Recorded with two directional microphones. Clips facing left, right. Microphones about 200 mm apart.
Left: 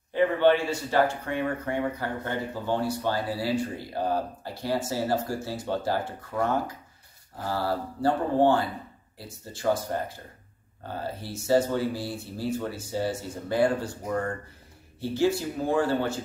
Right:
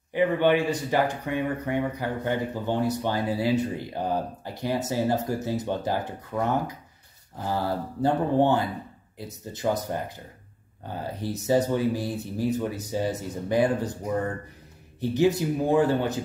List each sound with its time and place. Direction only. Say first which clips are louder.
0.1 s speech: even; 15° right (ahead or behind)